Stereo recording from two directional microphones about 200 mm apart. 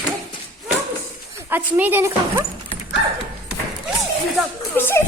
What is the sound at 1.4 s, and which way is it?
A woman's voice, 10° right (ahead or behind).